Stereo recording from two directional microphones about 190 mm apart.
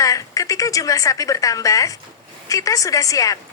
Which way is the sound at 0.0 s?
15° left (ahead or behind).